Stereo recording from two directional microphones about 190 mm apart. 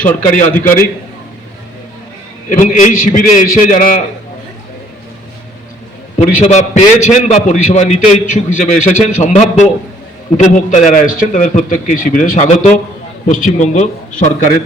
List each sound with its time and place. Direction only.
0.0 s a man's voice: 10° left (ahead or behind)
2.6 s a man's voice: 40° left (ahead or behind)
6.1 s a man's voice: 35° left (ahead or behind)